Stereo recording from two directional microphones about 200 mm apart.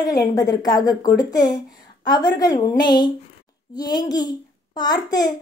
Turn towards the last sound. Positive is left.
turn(degrees=20)  # may be behind; listen again after turning